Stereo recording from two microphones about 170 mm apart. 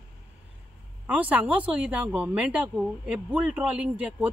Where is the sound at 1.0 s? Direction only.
10° right (ahead or behind).